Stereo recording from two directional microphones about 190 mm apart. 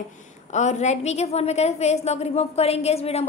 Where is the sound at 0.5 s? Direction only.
40° left (ahead or behind).